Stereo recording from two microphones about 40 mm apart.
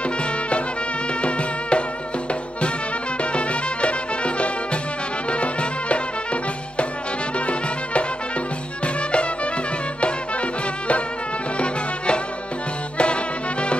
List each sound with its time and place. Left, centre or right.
0.0 s music: left
3.2 s music: left